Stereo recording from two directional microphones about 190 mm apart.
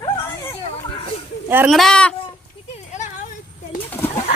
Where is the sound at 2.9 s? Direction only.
40° left (ahead or behind).